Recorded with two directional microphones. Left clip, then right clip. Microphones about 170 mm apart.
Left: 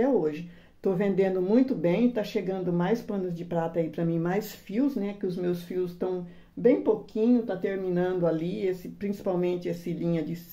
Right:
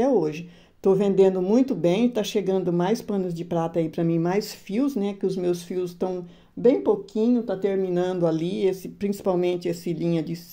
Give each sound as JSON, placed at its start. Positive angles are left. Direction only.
{"t": 0.0, "sound": "a sound", "side_deg": -45}
{"t": 0.8, "sound": "speech", "side_deg": -35}
{"t": 4.2, "sound": "speech", "side_deg": -35}
{"t": 4.7, "sound": "speech", "side_deg": -50}